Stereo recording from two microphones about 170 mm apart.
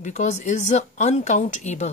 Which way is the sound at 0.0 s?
45° left (ahead or behind).